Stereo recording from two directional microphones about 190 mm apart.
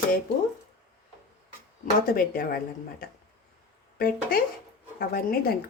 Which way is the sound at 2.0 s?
50° left (ahead or behind).